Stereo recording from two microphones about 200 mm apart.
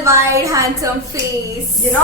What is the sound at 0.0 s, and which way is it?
Speech, 15° right (ahead or behind).